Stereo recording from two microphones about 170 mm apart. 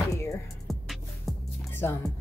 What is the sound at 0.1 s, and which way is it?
Music, 15° left (ahead or behind).